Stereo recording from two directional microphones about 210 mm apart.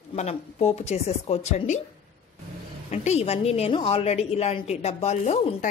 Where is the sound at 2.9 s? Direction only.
30° left (ahead or behind).